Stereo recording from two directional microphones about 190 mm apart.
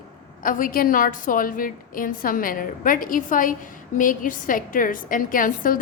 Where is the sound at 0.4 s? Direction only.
50° left (ahead or behind).